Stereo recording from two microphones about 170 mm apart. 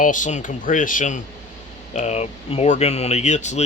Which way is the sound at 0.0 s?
50° left (ahead or behind).